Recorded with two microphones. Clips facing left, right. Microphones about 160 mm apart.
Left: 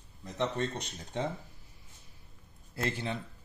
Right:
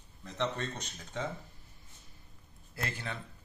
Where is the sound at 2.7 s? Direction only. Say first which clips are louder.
Left 5 dB; 25° left (ahead or behind).